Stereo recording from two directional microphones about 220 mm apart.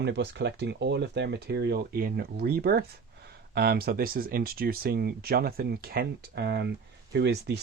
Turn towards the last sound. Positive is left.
turn(degrees=-50)  # may be behind; listen again after turning